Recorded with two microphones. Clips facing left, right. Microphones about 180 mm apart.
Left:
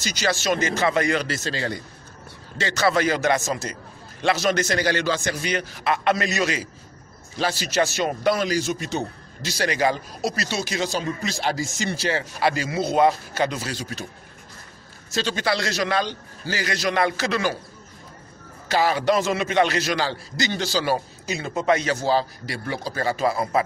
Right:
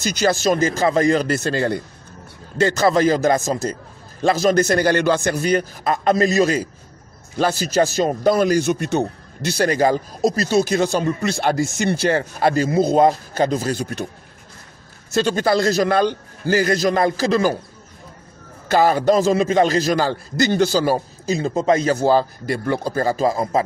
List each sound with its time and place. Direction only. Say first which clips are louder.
0.4 s speech: right 5 dB; 40° right (ahead or behind)
1.3 s a man's voice: right 8 dB; 55° right (ahead or behind)
2.9 s speech: right 2 dB; 40° right (ahead or behind); by 14.0 s 55° right (ahead or behind)
15.1 s speech: right 7 dB; 50° right (ahead or behind)
18.7 s speech: right 5 dB; 50° right (ahead or behind)
21.5 s speech: right 3 dB; 30° right (ahead or behind)
21.8 s speech: right 6 dB; 50° right (ahead or behind)